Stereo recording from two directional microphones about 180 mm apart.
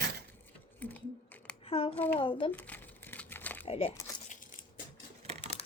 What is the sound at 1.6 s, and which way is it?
Speech, 30° left (ahead or behind).